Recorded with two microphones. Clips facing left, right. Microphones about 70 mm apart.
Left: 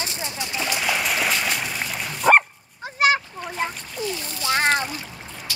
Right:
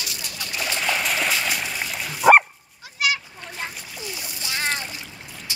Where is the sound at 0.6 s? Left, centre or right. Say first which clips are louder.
Even; centre.